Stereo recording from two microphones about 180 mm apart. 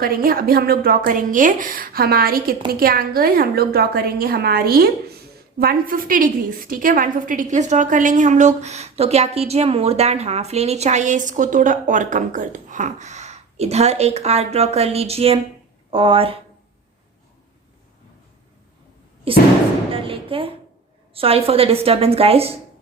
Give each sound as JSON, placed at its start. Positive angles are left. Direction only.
{"t": 0.0, "sound": "a woman's voice", "side_deg": -55}
{"t": 19.3, "sound": "a woman's voice", "side_deg": -30}
{"t": 19.9, "sound": "a sound", "side_deg": -30}
{"t": 21.1, "sound": "a woman's voice", "side_deg": -30}